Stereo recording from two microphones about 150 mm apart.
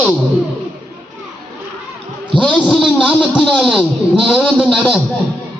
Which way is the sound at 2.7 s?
5° left (ahead or behind).